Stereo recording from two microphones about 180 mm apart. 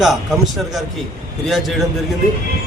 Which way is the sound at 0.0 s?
Centre (ahead or behind).